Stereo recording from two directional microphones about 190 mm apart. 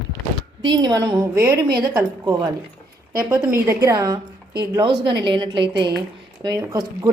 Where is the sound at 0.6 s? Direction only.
20° right (ahead or behind).